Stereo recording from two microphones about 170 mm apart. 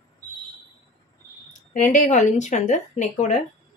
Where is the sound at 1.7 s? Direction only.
50° left (ahead or behind).